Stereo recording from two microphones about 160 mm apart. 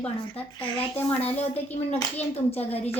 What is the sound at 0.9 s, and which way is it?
Speech, 10° left (ahead or behind).